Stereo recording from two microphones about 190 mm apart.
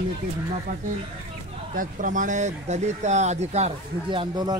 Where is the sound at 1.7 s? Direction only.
45° right (ahead or behind); by 4.5 s 25° right (ahead or behind).